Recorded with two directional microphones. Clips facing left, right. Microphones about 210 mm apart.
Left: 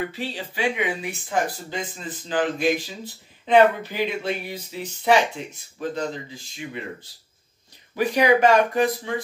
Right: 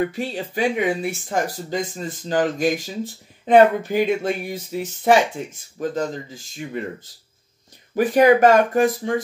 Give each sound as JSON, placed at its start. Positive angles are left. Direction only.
{"t": 0.3, "sound": "speech", "side_deg": -40}